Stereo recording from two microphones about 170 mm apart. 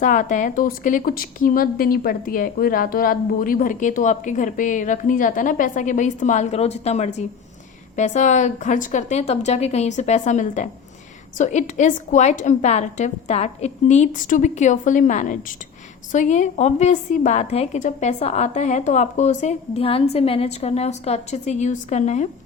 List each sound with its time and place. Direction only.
0.0 s a woman's voice: 50° left (ahead or behind)